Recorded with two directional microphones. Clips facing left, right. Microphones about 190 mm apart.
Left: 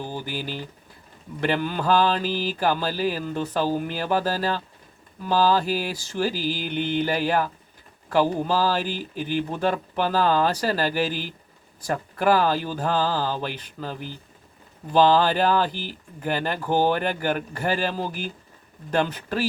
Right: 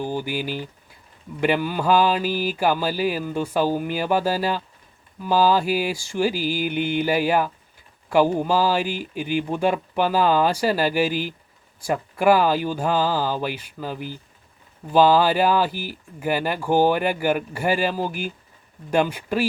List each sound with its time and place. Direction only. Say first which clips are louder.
0.0 s speech: right 5 dB; 15° right (ahead or behind)